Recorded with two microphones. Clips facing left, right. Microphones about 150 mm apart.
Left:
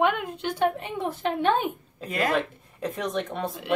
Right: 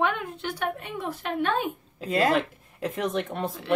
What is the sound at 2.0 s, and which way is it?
Speech, 30° right (ahead or behind).